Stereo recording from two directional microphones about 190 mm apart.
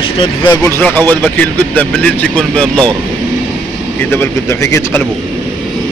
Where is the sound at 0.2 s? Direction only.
25° left (ahead or behind).